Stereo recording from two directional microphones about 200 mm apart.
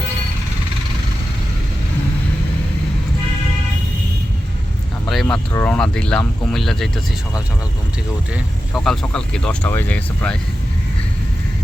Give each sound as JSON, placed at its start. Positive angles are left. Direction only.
{"t": 5.0, "sound": "a sound", "side_deg": 0}
{"t": 5.5, "sound": "speech", "side_deg": 5}
{"t": 8.3, "sound": "speech", "side_deg": 0}